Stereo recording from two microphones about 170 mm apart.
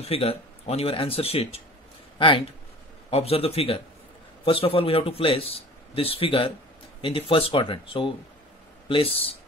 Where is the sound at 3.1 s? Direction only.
35° left (ahead or behind).